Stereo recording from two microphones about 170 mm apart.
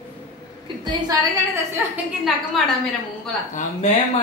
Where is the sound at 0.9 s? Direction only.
25° right (ahead or behind).